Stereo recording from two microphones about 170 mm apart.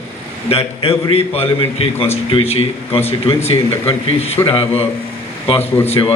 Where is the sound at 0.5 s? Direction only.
35° left (ahead or behind).